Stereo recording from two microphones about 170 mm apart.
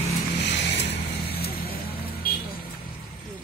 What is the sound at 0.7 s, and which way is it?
Vehicle, 90° left.